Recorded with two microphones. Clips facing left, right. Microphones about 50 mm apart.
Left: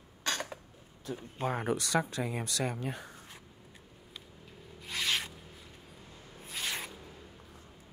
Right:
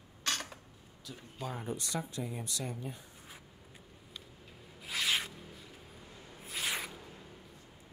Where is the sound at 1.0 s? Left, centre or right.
Left.